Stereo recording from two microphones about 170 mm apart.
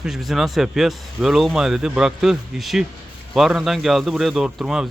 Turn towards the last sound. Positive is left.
turn(degrees=-5)  # may be behind; listen again after turning